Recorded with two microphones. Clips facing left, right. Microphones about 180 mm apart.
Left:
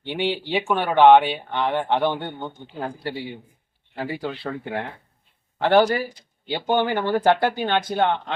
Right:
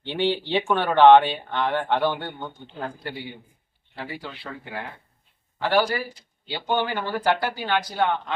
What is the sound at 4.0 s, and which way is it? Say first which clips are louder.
Speech: left 7 dB; 45° left (ahead or behind).